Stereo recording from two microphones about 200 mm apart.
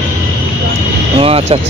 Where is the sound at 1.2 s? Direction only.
30° right (ahead or behind).